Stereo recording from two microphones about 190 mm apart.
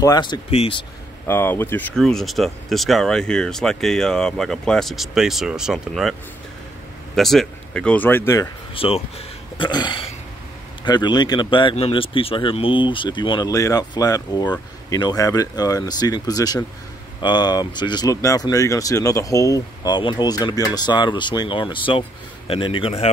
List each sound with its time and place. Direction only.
0.0 s speech: 20° left (ahead or behind)
1.2 s speech: 10° left (ahead or behind)
7.2 s speech: centre (ahead or behind)
8.7 s speech: 30° left (ahead or behind)